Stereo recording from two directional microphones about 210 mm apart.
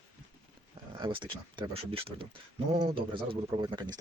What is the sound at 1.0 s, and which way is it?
Speech, 25° right (ahead or behind).